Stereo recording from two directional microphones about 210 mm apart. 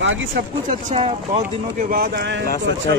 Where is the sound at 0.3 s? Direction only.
40° right (ahead or behind).